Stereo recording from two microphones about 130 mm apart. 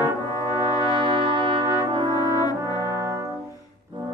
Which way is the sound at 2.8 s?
25° right (ahead or behind).